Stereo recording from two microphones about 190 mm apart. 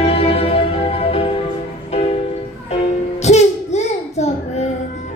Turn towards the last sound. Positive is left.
turn(degrees=35)  # may be behind; listen again after turning